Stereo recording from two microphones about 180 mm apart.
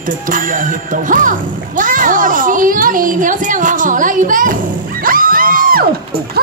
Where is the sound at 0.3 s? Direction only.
45° right (ahead or behind).